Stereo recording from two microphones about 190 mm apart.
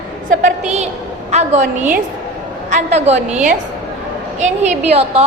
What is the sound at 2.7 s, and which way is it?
Speech, 35° right (ahead or behind).